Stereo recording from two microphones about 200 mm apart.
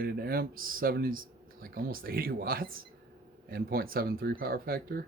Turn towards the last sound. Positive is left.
turn(degrees=-50)  # may be behind; listen again after turning